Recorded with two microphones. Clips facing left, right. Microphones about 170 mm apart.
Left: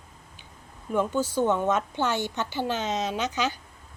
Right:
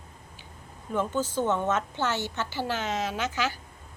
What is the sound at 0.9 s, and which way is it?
A woman's voice, 10° left (ahead or behind).